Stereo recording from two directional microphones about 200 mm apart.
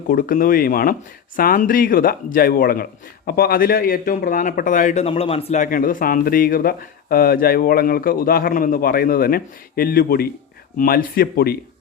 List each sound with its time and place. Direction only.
0.1 s speech: 45° left (ahead or behind)